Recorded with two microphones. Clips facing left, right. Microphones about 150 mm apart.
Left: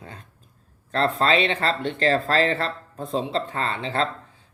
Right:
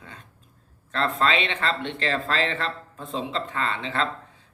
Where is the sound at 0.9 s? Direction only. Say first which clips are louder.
Left 3 dB; 35° left (ahead or behind).